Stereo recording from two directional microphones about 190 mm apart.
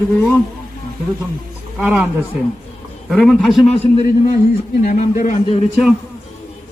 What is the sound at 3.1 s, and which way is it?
Speech, centre (ahead or behind).